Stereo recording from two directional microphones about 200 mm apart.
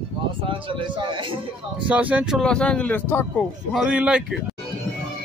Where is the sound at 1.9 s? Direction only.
5° right (ahead or behind); by 3.5 s 10° left (ahead or behind).